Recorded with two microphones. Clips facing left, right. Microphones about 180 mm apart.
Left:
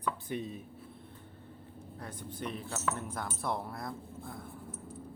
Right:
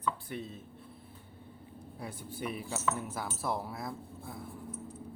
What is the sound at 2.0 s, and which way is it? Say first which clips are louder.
Speech: right 1 dB; 10° right (ahead or behind).